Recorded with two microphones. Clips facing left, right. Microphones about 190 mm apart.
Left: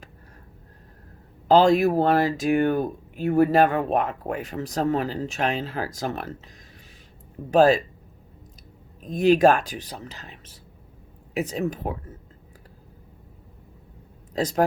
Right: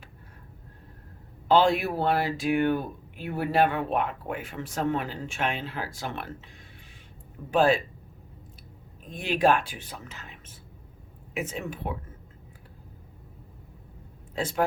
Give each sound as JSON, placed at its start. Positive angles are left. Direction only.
{"t": 1.5, "sound": "speech", "side_deg": 40}
{"t": 7.5, "sound": "speech", "side_deg": 40}
{"t": 9.0, "sound": "speech", "side_deg": 40}
{"t": 14.3, "sound": "speech", "side_deg": 40}